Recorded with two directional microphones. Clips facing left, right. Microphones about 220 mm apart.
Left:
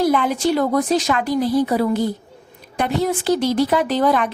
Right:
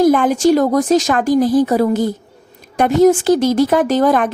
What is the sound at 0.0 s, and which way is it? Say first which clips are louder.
A woman's voice: right 6 dB; 45° right (ahead or behind).